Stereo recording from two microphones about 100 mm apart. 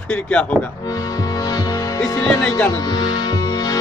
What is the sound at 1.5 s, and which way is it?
Music, 35° left (ahead or behind).